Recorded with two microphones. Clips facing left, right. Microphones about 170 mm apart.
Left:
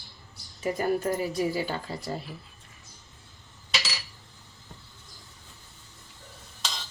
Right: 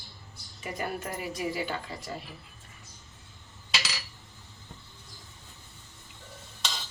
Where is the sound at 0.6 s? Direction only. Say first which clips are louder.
Left 8 dB; 35° left (ahead or behind).